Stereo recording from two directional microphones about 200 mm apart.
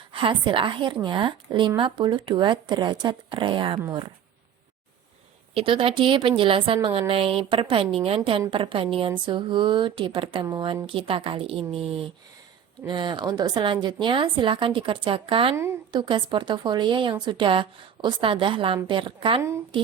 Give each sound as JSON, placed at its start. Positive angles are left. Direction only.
{"t": 0.1, "sound": "a woman's voice", "side_deg": -25}
{"t": 5.5, "sound": "a woman's voice", "side_deg": -25}